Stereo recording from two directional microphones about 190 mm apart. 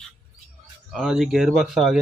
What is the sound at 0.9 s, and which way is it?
Speech, centre (ahead or behind).